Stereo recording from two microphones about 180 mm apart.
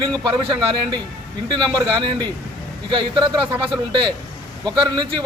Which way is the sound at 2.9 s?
25° right (ahead or behind).